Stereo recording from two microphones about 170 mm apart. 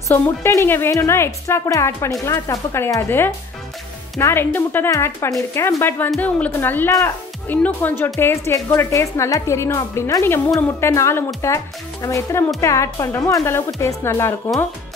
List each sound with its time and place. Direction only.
0.1 s a woman's voice: 15° left (ahead or behind)